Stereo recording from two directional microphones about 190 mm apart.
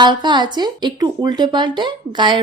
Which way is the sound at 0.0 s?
25° right (ahead or behind).